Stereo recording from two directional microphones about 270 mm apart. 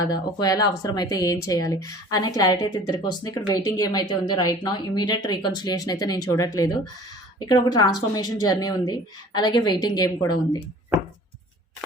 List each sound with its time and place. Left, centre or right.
0.0 s speech: centre